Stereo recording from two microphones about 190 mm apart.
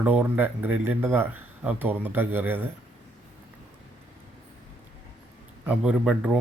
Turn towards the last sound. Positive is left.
turn(degrees=-5)  # may be behind; listen again after turning